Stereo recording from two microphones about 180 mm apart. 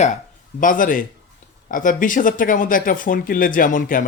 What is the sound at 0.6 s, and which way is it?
Speech, 50° left (ahead or behind).